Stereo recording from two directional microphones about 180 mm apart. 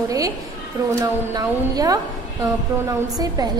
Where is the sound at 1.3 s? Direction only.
20° right (ahead or behind).